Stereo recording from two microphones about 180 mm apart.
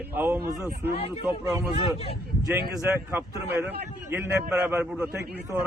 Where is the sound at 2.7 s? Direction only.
5° right (ahead or behind).